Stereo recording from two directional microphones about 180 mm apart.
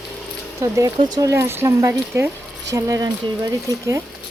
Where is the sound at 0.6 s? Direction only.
15° right (ahead or behind).